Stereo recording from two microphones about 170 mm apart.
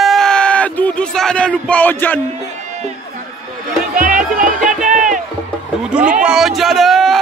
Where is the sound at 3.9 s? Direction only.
55° right (ahead or behind).